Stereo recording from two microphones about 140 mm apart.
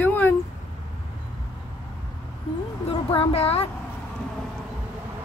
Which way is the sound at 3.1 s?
45° left (ahead or behind).